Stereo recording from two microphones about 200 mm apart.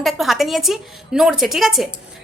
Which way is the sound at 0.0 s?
Centre (ahead or behind).